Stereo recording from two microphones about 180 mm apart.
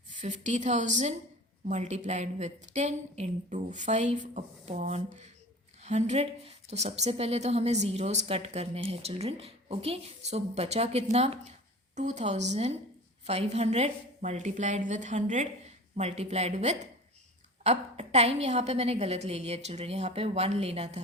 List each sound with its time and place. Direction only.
0.1 s a woman's voice: 45° right (ahead or behind)